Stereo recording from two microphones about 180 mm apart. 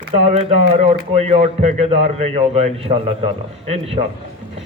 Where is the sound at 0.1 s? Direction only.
35° right (ahead or behind).